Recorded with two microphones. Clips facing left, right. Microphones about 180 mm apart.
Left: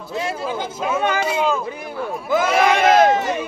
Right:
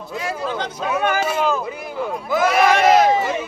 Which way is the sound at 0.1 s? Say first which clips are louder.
Left 2 dB; 25° left (ahead or behind).